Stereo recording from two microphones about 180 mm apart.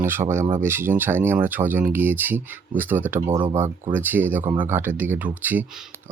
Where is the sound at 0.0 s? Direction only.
15° right (ahead or behind).